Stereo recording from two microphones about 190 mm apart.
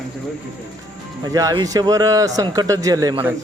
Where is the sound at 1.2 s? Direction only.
20° right (ahead or behind).